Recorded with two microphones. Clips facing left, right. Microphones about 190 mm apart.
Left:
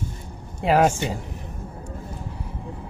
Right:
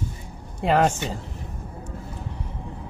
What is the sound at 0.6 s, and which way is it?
Speech, 5° left (ahead or behind).